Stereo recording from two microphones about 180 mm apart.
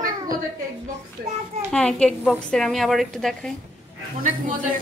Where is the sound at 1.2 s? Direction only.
55° right (ahead or behind).